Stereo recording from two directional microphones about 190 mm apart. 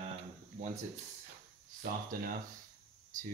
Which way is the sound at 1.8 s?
50° right (ahead or behind).